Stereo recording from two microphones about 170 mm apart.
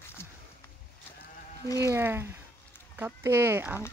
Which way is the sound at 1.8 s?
15° right (ahead or behind).